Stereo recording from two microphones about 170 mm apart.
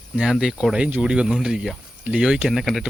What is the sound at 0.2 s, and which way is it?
Speech, 5° right (ahead or behind).